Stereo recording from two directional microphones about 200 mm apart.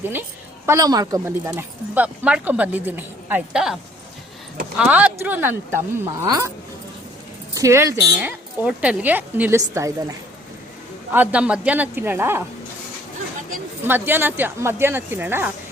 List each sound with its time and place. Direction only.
0.0 s a woman's voice: 10° right (ahead or behind)
4.8 s a woman's voice: 5° right (ahead or behind)
7.5 s a woman's voice: 15° right (ahead or behind)
11.1 s a woman's voice: 10° right (ahead or behind)
13.8 s a woman's voice: 10° right (ahead or behind)